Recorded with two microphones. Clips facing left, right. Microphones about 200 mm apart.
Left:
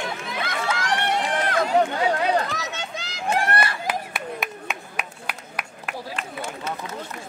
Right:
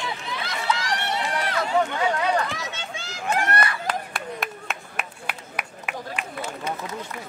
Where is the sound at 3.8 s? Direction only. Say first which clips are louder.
Left 1 dB; centre (ahead or behind).